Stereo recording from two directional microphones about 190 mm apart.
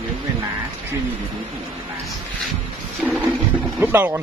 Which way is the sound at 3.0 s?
10° right (ahead or behind).